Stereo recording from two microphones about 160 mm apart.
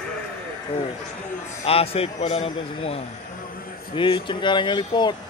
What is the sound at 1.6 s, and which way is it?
Speech, 35° left (ahead or behind).